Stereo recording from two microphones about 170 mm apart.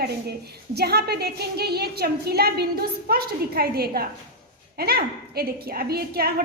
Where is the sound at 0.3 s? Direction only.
70° right (ahead or behind).